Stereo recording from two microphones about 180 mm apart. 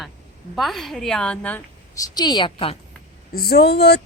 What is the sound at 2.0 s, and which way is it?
Speech, 25° left (ahead or behind).